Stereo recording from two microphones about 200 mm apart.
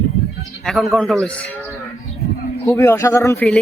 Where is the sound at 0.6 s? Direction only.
Centre (ahead or behind).